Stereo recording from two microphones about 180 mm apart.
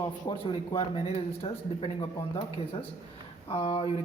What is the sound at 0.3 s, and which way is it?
Speech, 25° left (ahead or behind).